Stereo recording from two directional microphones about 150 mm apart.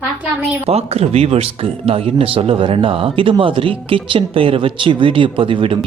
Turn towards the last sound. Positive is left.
turn(degrees=-35)  # may be behind; listen again after turning